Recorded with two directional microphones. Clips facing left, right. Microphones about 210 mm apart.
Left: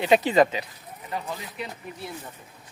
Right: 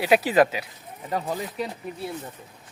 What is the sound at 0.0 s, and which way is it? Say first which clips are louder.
Speech: even; 5° right (ahead or behind).